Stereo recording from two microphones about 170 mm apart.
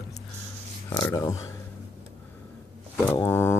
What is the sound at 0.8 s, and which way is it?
Speech, 15° left (ahead or behind).